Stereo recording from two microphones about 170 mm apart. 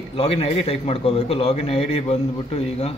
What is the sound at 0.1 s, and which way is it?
A man's voice, 35° left (ahead or behind).